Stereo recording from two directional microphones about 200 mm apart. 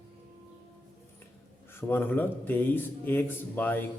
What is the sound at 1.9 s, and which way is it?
Speech, 10° left (ahead or behind).